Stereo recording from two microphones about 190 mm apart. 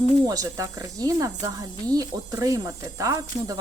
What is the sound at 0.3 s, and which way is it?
Speech, 20° right (ahead or behind).